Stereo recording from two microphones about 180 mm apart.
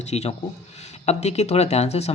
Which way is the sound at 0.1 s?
35° left (ahead or behind).